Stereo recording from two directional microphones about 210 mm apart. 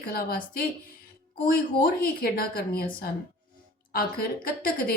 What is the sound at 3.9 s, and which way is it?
A woman's voice, 45° left (ahead or behind).